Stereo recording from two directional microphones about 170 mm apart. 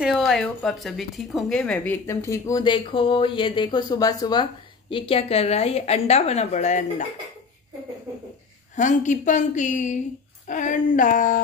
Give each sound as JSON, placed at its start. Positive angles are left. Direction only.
{"t": 0.0, "sound": "a woman's voice", "side_deg": 0}
{"t": 8.7, "sound": "a woman's voice", "side_deg": 45}